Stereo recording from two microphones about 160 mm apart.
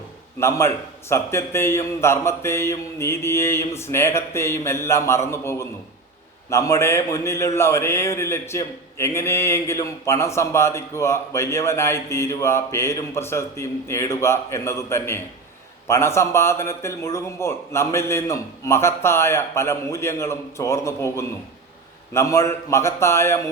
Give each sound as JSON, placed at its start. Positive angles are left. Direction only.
{"t": 0.3, "sound": "a man's voice", "side_deg": 15}